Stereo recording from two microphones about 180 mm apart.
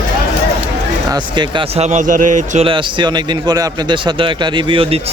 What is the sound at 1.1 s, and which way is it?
Speech, 25° right (ahead or behind).